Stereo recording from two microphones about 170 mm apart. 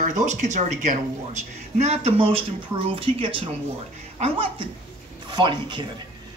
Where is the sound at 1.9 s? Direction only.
35° right (ahead or behind).